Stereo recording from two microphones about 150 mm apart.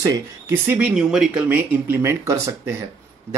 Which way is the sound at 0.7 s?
5° right (ahead or behind).